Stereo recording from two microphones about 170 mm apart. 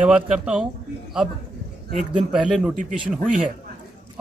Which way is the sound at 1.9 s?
45° right (ahead or behind).